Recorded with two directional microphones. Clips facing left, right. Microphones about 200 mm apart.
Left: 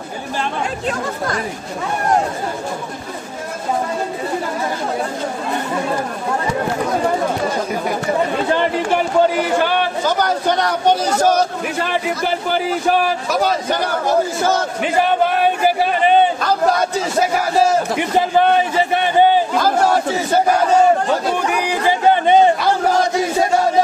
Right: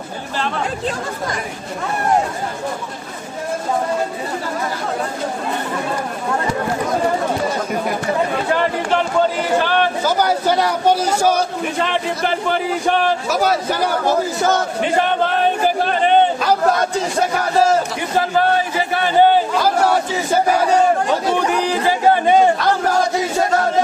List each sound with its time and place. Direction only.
10.0 s a man's voice: 10° right (ahead or behind)
12.4 s speech: 5° left (ahead or behind)
13.3 s speech: 5° right (ahead or behind)
17.9 s a man's voice: 20° left (ahead or behind)
21.5 s a sound: 10° left (ahead or behind)
22.1 s a sound: 20° left (ahead or behind)